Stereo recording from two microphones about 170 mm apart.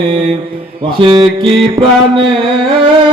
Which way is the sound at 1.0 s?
30° right (ahead or behind).